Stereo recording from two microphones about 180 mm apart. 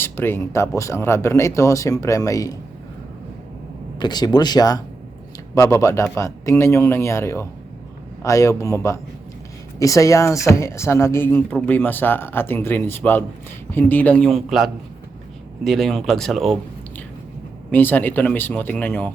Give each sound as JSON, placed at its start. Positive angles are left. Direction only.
{"t": 0.0, "sound": "speech", "side_deg": 10}
{"t": 4.0, "sound": "speech", "side_deg": 25}
{"t": 17.7, "sound": "speech", "side_deg": 10}